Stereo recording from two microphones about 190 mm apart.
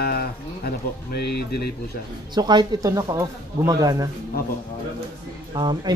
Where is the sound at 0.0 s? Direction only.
55° left (ahead or behind).